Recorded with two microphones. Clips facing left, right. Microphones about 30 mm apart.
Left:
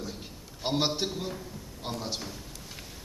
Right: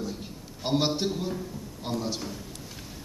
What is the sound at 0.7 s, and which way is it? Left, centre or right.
A man's voice, centre.